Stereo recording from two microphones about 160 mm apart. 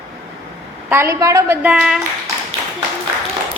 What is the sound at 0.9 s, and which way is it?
Speech, 15° right (ahead or behind).